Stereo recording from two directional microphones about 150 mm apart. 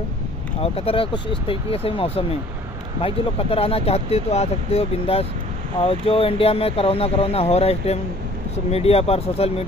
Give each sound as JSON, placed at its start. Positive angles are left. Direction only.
{"t": 0.6, "sound": "speech", "side_deg": 40}